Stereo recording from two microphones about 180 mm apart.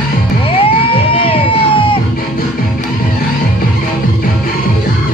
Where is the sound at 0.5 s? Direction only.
30° left (ahead or behind).